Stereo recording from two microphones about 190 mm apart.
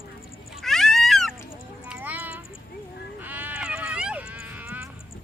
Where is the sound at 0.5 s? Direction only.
Centre (ahead or behind).